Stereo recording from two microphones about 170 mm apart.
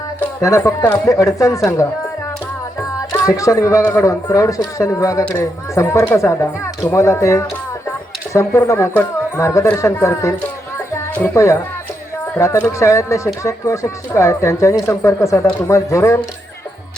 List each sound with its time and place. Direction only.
0.2 s speech: 20° left (ahead or behind)
3.1 s speech: 20° left (ahead or behind)